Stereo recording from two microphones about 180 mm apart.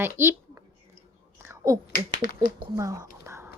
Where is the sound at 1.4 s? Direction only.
15° right (ahead or behind).